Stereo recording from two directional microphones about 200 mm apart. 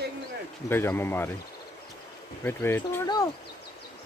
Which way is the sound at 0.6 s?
10° left (ahead or behind).